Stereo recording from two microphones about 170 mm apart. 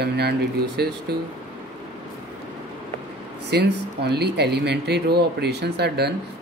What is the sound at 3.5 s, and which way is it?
Speech, 75° right (ahead or behind).